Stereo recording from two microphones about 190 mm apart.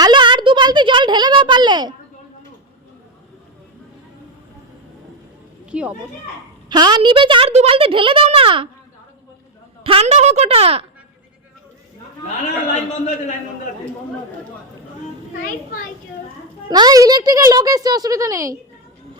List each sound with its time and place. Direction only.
0.0 s a sound: 25° right (ahead or behind)
5.7 s speech: 5° right (ahead or behind)
6.7 s a woman's voice: 20° right (ahead or behind)
9.8 s a woman's voice: 30° right (ahead or behind)
12.7 s a man's voice: 40° left (ahead or behind)
15.4 s a child's voice: 50° left (ahead or behind)
16.6 s a woman's voice: 20° right (ahead or behind)